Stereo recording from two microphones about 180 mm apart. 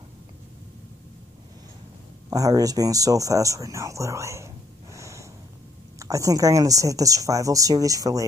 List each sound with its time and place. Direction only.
2.2 s speech: 20° right (ahead or behind)
4.9 s snort: 15° right (ahead or behind)
5.9 s a woman's voice: 20° right (ahead or behind)